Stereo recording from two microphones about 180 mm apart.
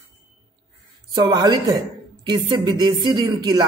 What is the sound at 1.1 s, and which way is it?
A man's voice, 25° right (ahead or behind).